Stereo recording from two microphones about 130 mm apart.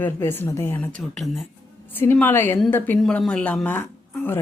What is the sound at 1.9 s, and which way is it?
Speech, 15° left (ahead or behind).